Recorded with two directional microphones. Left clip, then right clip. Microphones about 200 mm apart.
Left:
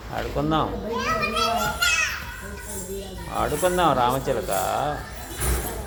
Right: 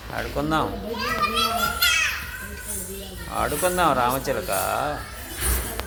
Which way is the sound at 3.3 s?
15° right (ahead or behind).